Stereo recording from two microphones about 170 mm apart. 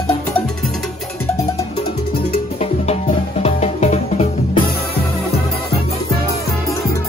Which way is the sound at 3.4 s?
40° left (ahead or behind).